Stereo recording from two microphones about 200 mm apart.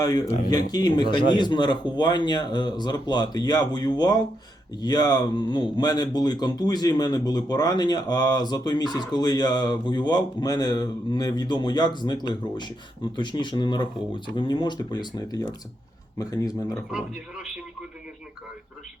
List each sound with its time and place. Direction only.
0.5 s speech: 20° left (ahead or behind)
16.9 s speech: 5° right (ahead or behind)